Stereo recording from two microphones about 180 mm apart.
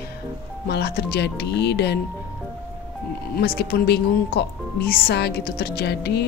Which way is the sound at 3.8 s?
65° left (ahead or behind).